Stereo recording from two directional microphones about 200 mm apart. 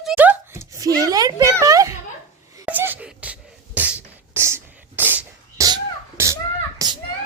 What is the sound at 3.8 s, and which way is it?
Beatboxing, 10° right (ahead or behind).